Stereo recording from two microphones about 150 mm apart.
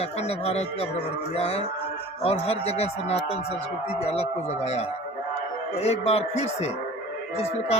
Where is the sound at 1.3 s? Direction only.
40° left (ahead or behind).